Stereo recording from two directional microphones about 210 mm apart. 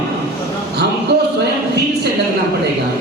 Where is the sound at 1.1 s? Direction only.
50° right (ahead or behind).